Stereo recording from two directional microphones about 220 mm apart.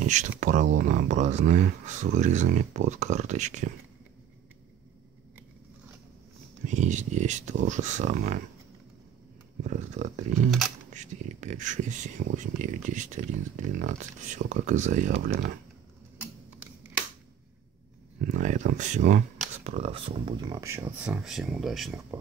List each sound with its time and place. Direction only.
0.0 s speech: 35° right (ahead or behind)
6.6 s speech: 35° right (ahead or behind)
9.6 s speech: 35° right (ahead or behind)
18.2 s speech: 35° right (ahead or behind); by 22.0 s centre (ahead or behind)